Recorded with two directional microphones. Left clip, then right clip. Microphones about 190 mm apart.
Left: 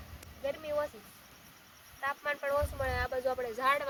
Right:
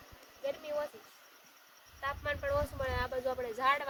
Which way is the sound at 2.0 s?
50° right (ahead or behind).